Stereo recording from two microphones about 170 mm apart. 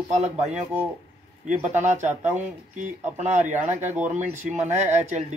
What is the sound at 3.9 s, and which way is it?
Speech, 10° right (ahead or behind).